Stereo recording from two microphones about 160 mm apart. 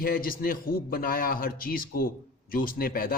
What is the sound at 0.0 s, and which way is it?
A man's voice, 65° left (ahead or behind).